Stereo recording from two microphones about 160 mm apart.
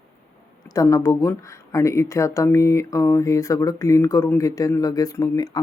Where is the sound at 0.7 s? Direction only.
20° left (ahead or behind).